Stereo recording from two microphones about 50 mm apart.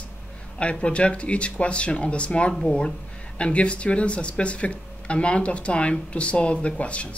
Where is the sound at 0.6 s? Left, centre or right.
Left.